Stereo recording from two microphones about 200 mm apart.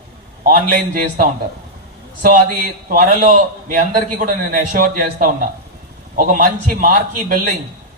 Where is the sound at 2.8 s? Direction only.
45° right (ahead or behind).